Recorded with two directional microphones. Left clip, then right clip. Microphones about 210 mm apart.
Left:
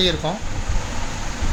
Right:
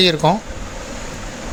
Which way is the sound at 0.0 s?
45° right (ahead or behind).